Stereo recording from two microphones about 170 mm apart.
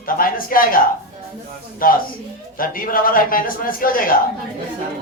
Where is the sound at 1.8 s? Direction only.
55° left (ahead or behind).